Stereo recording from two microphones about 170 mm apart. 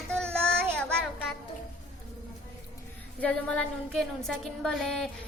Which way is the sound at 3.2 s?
10° left (ahead or behind).